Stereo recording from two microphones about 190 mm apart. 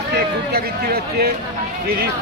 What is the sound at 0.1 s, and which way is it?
Speech, 55° right (ahead or behind).